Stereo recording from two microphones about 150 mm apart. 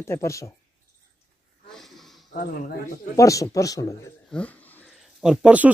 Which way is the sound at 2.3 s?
65° left (ahead or behind).